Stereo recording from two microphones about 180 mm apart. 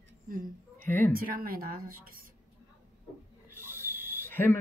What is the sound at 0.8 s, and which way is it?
Speech, 10° left (ahead or behind).